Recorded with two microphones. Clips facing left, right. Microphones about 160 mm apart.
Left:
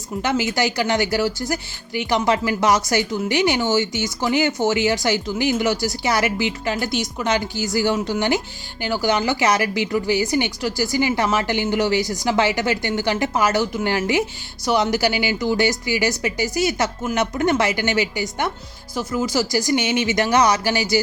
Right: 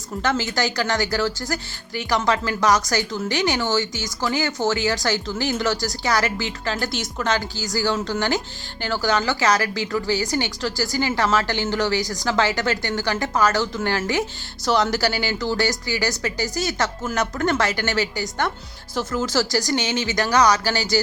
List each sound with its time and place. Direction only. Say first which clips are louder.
0.2 s speech: left 2 dB; 15° left (ahead or behind)